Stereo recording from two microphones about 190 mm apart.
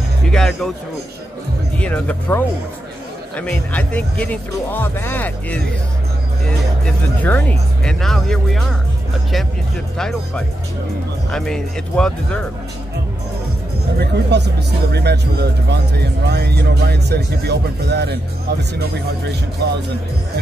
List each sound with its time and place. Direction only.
0.3 s speech: centre (ahead or behind)
1.8 s speech: 5° left (ahead or behind)
7.2 s speech: 10° left (ahead or behind)
9.9 s speech: 5° left (ahead or behind)
13.9 s speech: 60° right (ahead or behind)